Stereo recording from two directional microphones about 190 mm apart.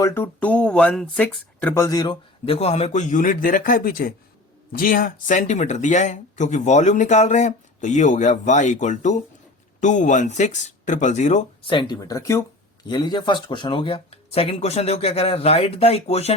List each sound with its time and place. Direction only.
0.0 s speech: 15° left (ahead or behind); by 11.4 s 40° left (ahead or behind)
11.6 s speech: 25° left (ahead or behind)